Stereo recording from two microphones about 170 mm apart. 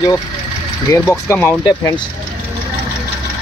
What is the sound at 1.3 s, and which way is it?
Speech, 15° left (ahead or behind).